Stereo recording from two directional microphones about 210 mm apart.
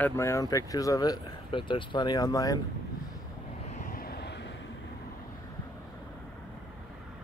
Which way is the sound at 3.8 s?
45° left (ahead or behind).